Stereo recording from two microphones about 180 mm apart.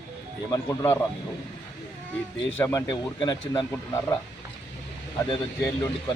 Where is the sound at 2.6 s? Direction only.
15° left (ahead or behind).